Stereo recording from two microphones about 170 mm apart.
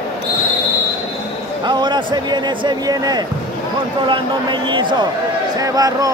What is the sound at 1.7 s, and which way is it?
Speech, 25° right (ahead or behind).